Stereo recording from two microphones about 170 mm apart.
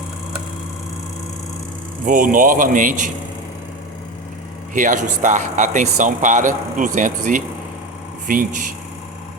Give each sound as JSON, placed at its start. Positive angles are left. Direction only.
{"t": 2.0, "sound": "speech", "side_deg": -55}
{"t": 4.7, "sound": "speech", "side_deg": -50}